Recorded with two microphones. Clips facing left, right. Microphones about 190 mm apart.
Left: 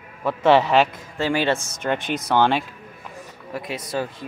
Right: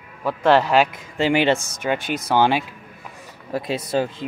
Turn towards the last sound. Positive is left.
turn(degrees=-25)  # may be behind; listen again after turning